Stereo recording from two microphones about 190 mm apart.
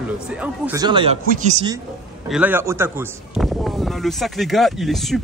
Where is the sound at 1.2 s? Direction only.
40° right (ahead or behind).